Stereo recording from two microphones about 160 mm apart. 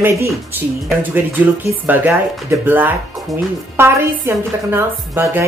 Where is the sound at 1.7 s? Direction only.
10° right (ahead or behind).